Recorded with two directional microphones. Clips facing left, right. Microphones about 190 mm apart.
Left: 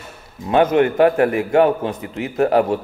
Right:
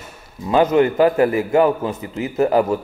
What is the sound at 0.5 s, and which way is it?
Speech, 60° left (ahead or behind).